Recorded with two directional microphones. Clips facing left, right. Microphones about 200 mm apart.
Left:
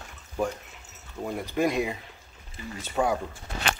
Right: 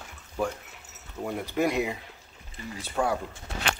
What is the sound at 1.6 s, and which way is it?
Speech, 10° right (ahead or behind).